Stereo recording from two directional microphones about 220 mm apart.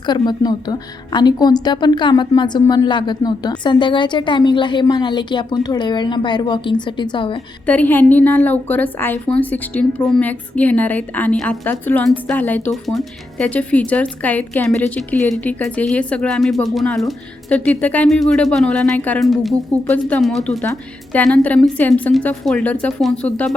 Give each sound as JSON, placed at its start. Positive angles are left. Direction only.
{"t": 0.0, "sound": "a woman's voice", "side_deg": 20}
{"t": 7.7, "sound": "a woman's voice", "side_deg": 10}